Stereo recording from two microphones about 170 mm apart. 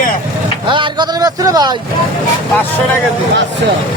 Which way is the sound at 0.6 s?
30° right (ahead or behind).